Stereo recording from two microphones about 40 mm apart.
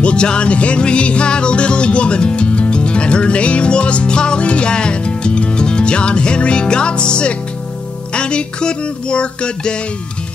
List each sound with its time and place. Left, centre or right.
0.0 s music: left